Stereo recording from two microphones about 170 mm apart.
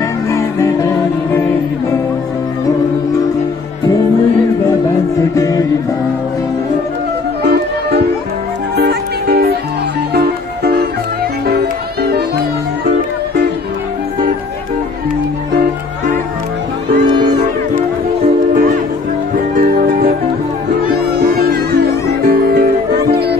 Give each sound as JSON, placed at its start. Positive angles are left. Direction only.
{"t": 0.3, "sound": "music", "side_deg": 20}
{"t": 5.2, "sound": "music", "side_deg": 20}
{"t": 8.7, "sound": "music", "side_deg": -70}
{"t": 18.5, "sound": "music", "side_deg": -60}